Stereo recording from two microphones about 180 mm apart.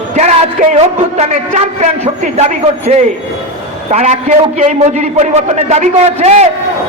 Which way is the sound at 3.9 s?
40° right (ahead or behind).